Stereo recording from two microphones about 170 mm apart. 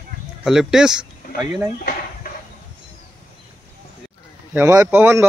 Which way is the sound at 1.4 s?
20° right (ahead or behind).